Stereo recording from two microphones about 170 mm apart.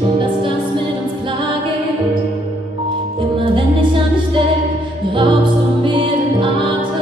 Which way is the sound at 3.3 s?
30° right (ahead or behind).